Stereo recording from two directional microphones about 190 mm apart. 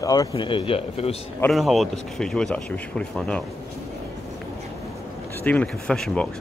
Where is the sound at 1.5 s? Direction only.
Centre (ahead or behind).